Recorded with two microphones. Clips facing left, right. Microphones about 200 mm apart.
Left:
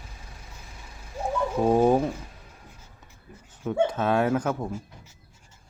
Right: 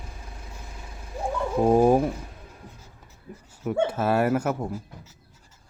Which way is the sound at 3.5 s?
10° right (ahead or behind).